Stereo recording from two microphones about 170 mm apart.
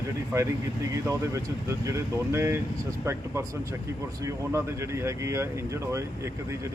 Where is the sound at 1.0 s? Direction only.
20° right (ahead or behind).